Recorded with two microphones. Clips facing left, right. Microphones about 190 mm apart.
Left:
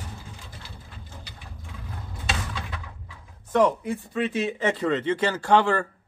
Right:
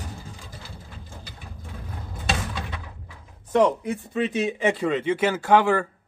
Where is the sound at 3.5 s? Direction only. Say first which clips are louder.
Right 1 dB; 20° right (ahead or behind).